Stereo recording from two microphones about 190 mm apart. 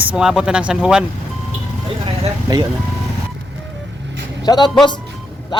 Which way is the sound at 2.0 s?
20° right (ahead or behind).